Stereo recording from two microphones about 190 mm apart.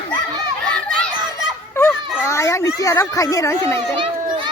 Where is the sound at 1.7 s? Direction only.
15° left (ahead or behind).